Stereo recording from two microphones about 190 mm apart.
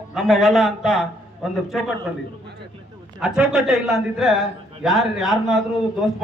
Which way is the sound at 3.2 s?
5° right (ahead or behind).